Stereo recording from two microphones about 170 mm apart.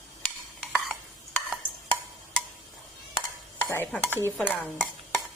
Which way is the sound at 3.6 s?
15° left (ahead or behind).